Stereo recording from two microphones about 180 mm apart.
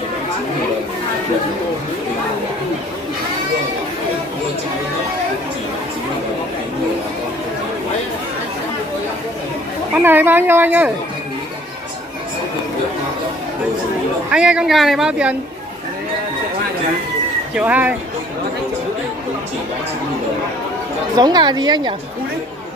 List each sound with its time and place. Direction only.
10.0 s speech: 10° right (ahead or behind)
14.3 s a woman's voice: 5° right (ahead or behind)
17.6 s speech: 10° right (ahead or behind)
21.2 s a woman's voice: 25° right (ahead or behind)